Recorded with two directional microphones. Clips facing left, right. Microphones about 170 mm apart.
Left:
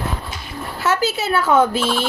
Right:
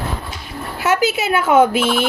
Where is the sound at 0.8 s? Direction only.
15° right (ahead or behind).